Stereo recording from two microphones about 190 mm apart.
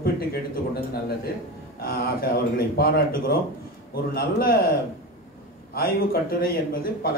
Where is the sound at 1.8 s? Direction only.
50° left (ahead or behind).